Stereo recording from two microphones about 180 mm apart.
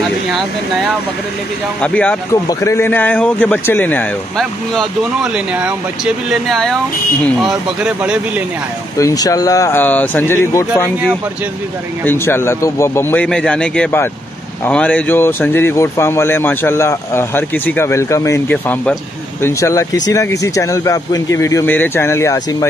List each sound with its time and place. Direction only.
1.8 s speech: 5° left (ahead or behind)
8.9 s speech: 20° left (ahead or behind)
12.0 s speech: 10° left (ahead or behind)